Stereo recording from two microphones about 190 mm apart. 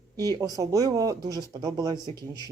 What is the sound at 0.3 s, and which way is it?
Speech, 20° right (ahead or behind).